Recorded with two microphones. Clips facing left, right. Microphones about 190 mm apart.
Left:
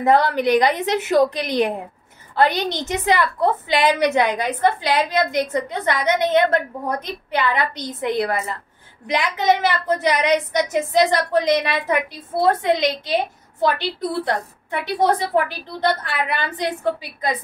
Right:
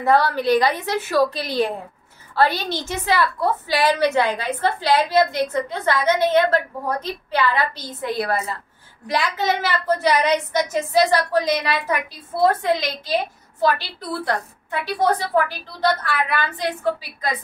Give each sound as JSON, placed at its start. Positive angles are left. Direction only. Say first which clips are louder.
{"t": 0.0, "sound": "a woman's voice", "louder": "left 2 dB", "side_deg": 20}